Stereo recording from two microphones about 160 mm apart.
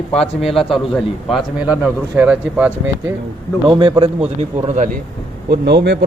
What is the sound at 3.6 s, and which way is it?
Speech, 25° right (ahead or behind).